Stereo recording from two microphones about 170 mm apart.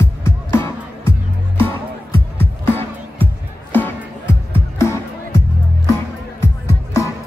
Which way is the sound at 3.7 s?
10° left (ahead or behind).